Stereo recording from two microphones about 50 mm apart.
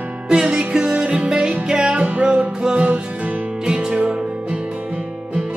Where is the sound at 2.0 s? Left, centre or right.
Right.